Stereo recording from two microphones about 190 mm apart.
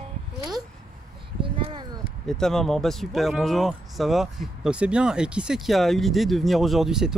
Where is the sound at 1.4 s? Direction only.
25° right (ahead or behind).